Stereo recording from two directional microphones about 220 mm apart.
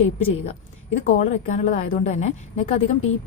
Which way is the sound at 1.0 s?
35° left (ahead or behind).